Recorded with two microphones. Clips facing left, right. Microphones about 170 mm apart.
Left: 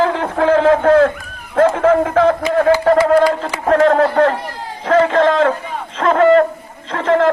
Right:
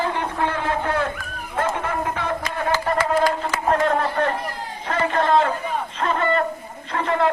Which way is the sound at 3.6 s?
90° left.